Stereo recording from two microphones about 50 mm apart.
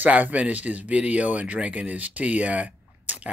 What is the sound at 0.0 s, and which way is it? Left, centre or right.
Speech, right.